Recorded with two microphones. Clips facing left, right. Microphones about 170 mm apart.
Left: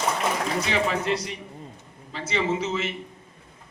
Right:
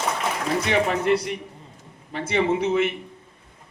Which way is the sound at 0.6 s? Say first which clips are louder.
Right 6 dB; 60° right (ahead or behind).